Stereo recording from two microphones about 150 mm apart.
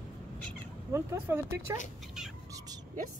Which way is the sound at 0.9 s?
15° right (ahead or behind).